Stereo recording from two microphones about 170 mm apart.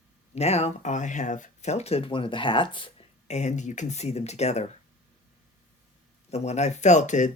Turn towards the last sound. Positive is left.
turn(degrees=45)  # may be behind; listen again after turning